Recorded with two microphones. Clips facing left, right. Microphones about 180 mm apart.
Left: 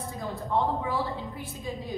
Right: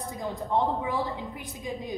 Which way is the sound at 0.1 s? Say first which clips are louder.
Right 1 dB; 20° right (ahead or behind).